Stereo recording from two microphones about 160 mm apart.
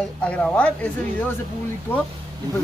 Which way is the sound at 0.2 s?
5° left (ahead or behind).